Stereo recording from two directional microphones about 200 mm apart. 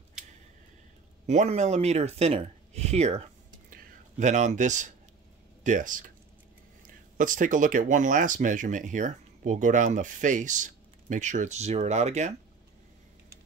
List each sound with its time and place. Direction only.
1.2 s speech: 35° right (ahead or behind)
7.2 s speech: 40° right (ahead or behind)